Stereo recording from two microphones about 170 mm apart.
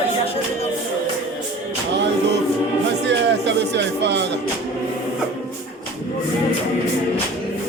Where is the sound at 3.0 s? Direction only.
90° right.